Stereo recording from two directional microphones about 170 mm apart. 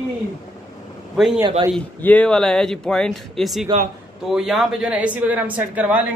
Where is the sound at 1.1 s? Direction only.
5° right (ahead or behind).